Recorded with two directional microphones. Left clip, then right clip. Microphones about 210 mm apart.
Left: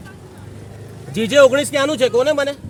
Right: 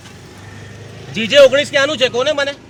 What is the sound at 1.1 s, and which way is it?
Speech, 60° left (ahead or behind).